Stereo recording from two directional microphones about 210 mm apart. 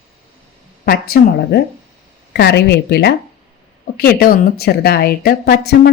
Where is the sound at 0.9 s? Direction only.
45° left (ahead or behind).